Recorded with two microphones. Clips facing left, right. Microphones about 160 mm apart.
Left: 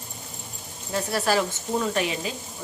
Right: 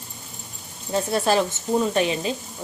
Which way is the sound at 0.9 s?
25° right (ahead or behind).